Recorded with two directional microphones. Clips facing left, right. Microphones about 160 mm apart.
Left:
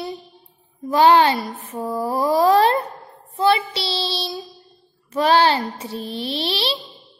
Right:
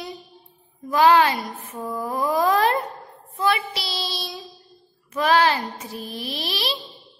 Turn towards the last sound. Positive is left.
turn(degrees=30)  # may be behind; listen again after turning